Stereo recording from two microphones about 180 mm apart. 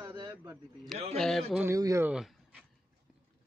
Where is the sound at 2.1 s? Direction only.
5° right (ahead or behind).